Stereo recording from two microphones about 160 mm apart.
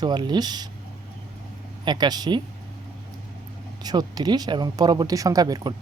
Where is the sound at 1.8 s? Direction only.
25° right (ahead or behind).